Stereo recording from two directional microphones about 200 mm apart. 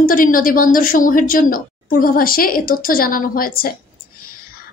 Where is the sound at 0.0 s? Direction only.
45° left (ahead or behind).